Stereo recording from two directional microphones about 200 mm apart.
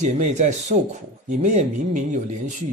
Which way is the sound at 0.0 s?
35° right (ahead or behind).